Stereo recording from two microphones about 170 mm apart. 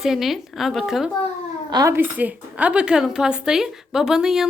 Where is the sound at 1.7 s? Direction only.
20° right (ahead or behind).